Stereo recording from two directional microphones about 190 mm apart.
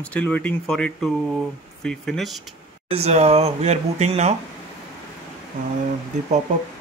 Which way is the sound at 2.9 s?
35° right (ahead or behind).